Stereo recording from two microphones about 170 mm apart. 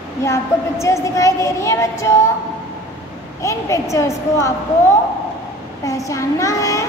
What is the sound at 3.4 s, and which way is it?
A woman's voice, 20° left (ahead or behind).